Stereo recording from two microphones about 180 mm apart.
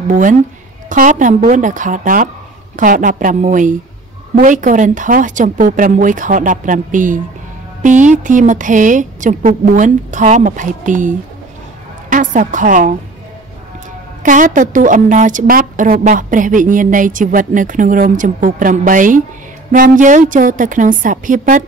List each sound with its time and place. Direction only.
0.1 s a woman's voice: 45° right (ahead or behind)
14.2 s a woman's voice: 45° right (ahead or behind)